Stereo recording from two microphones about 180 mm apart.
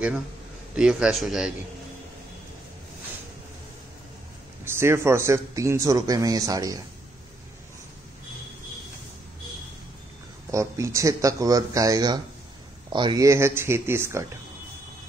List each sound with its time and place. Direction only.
0.7 s speech: 5° right (ahead or behind)
4.6 s speech: 15° right (ahead or behind)
10.5 s speech: 15° right (ahead or behind)